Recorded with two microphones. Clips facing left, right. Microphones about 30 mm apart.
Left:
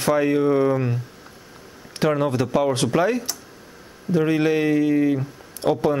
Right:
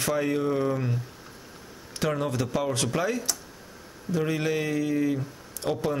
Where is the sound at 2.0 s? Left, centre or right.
Left.